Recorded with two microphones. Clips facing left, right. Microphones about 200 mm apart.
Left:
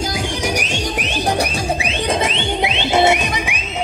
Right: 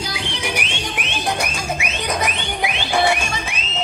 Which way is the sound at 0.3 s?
40° left (ahead or behind).